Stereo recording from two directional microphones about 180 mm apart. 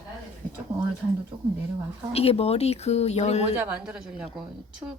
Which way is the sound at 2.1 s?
35° left (ahead or behind).